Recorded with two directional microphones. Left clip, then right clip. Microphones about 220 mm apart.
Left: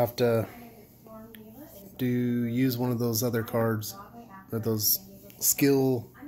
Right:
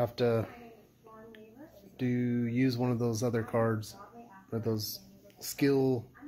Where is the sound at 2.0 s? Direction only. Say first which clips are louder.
Left 4 dB; centre (ahead or behind).